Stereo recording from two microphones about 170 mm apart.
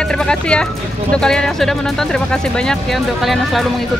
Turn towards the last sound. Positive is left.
turn(degrees=0)  # may be behind; listen again after turning